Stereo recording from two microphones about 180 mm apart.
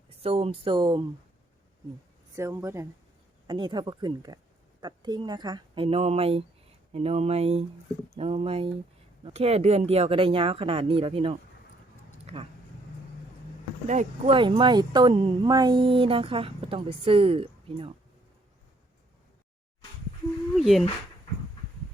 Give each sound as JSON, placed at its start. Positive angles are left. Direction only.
{"t": 0.2, "sound": "speech", "side_deg": -30}
{"t": 2.3, "sound": "speech", "side_deg": -15}
{"t": 12.2, "sound": "a sound", "side_deg": -35}
{"t": 13.8, "sound": "speech", "side_deg": -40}
{"t": 14.3, "sound": "speech", "side_deg": -25}
{"t": 20.6, "sound": "speech", "side_deg": 0}